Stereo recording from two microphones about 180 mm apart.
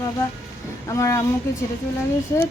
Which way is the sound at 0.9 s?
15° left (ahead or behind).